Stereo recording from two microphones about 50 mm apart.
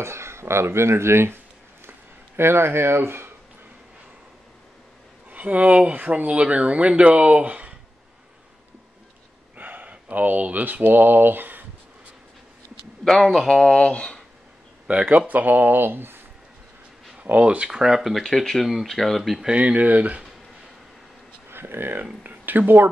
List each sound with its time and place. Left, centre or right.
0.0 s speech: right
5.3 s speech: right
9.6 s speech: right
13.0 s speech: centre
13.5 s speech: centre
13.7 s speech: left
15.0 s speech: right
17.2 s speech: right
17.6 s speech: centre
18.2 s speech: centre
19.4 s speech: right
21.5 s speech: right